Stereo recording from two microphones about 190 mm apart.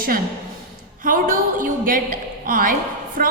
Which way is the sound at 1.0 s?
45° right (ahead or behind).